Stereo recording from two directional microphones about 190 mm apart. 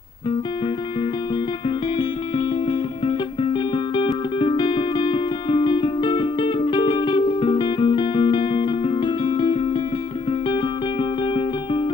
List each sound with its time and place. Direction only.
3.7 s music: 25° left (ahead or behind)